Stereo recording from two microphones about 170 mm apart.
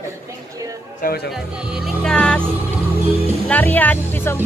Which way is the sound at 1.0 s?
65° left (ahead or behind).